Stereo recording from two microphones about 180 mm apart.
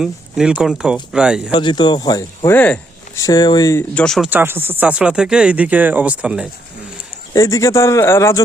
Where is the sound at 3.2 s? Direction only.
20° left (ahead or behind).